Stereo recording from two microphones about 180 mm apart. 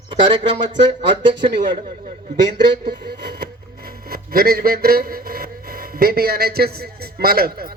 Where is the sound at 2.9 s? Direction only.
60° right (ahead or behind).